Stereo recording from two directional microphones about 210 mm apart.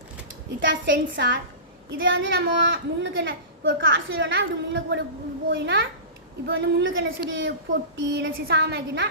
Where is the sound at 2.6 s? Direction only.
60° right (ahead or behind).